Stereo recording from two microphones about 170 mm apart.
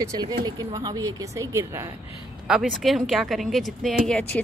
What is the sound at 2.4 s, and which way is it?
Speech, 5° right (ahead or behind).